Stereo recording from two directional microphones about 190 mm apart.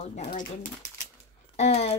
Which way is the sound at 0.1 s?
30° left (ahead or behind).